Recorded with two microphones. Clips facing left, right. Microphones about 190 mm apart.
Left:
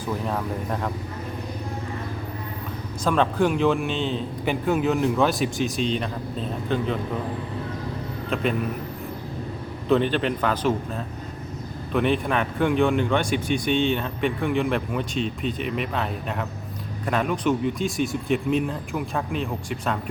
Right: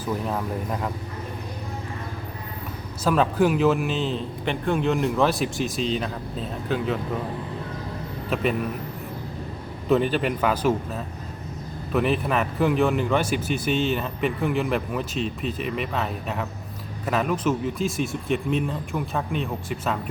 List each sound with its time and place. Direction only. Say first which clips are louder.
0.0 s speech: even; 5° right (ahead or behind)
3.0 s speech: right 1 dB; 5° right (ahead or behind)
8.3 s speech: right 1 dB; 5° right (ahead or behind)
9.9 s a man's voice: even; 5° right (ahead or behind)